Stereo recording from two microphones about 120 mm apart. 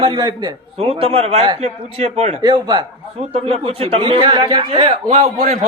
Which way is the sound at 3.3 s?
55° right (ahead or behind).